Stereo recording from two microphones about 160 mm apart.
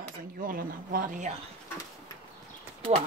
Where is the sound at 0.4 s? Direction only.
60° right (ahead or behind).